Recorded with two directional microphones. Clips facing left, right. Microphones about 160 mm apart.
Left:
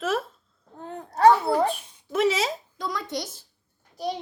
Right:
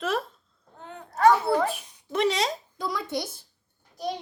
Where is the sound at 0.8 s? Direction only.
35° left (ahead or behind).